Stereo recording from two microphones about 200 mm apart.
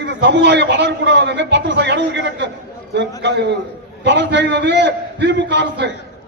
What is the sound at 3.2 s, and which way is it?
A man's voice, 60° right (ahead or behind).